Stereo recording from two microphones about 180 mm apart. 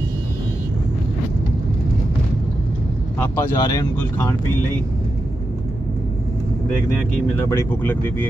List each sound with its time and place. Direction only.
3.2 s speech: 20° left (ahead or behind)
7.3 s speech: 10° left (ahead or behind)